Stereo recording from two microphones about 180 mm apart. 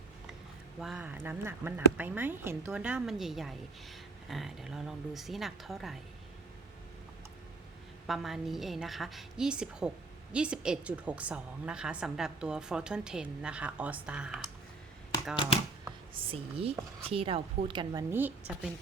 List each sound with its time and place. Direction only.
0.8 s a woman's voice: 5° right (ahead or behind)
8.0 s a woman's voice: centre (ahead or behind)
16.1 s speech: 30° right (ahead or behind)
18.1 s speech: 10° right (ahead or behind)